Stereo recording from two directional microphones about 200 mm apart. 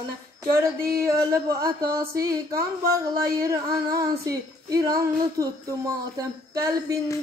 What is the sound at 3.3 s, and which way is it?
Female singing, 20° right (ahead or behind).